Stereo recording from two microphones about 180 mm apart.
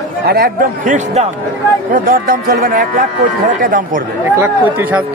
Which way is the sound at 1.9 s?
50° right (ahead or behind).